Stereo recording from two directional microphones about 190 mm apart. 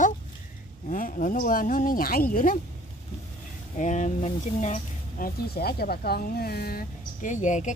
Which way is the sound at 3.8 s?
40° left (ahead or behind).